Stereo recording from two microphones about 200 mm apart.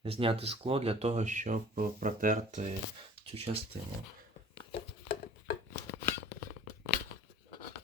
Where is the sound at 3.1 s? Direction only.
30° right (ahead or behind).